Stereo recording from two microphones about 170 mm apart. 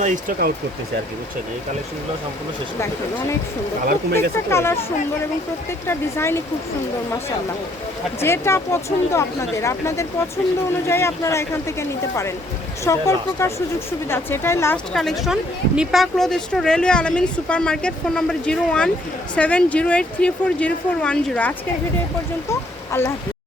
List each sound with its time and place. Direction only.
0.0 s speech: 55° right (ahead or behind)
4.2 s speech: 15° left (ahead or behind)
5.9 s speech: 15° left (ahead or behind)
8.2 s speech: 15° left (ahead or behind)
14.9 s speech: centre (ahead or behind)
22.9 s speech: 15° left (ahead or behind)